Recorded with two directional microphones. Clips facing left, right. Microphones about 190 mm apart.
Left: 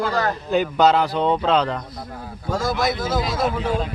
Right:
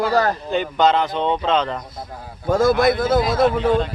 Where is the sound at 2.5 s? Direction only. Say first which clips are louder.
Right 7 dB; 55° right (ahead or behind).